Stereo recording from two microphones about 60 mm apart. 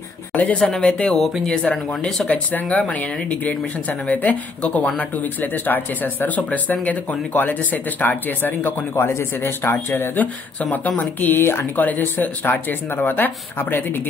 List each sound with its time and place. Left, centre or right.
0.3 s speech: left
1.1 s speech: centre
1.4 s speech: centre
2.2 s speech: left
10.2 s speech: left